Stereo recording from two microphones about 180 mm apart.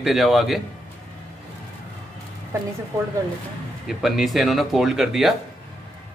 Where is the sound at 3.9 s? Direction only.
Centre (ahead or behind).